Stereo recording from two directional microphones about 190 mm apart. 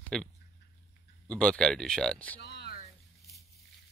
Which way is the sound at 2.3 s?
60° left (ahead or behind).